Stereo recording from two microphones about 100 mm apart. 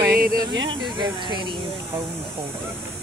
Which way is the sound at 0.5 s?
50° right (ahead or behind).